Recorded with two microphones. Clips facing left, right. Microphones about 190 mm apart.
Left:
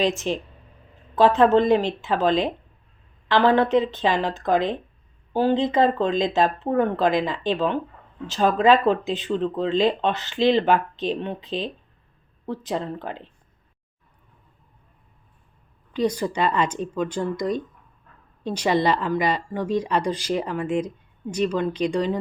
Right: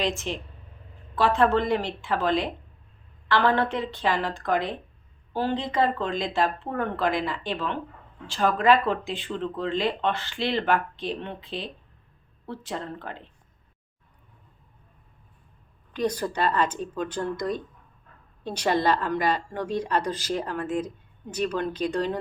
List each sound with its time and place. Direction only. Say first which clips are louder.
0.0 s speech: left 5 dB; 15° left (ahead or behind)
16.0 s speech: left 3 dB; 10° left (ahead or behind)
18.5 s speech: left 2 dB; 10° left (ahead or behind)